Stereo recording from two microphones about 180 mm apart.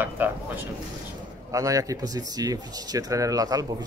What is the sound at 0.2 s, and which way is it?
Speech, 10° right (ahead or behind).